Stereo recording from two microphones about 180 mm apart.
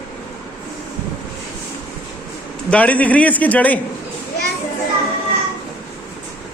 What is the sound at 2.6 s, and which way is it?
A man's voice, 10° left (ahead or behind).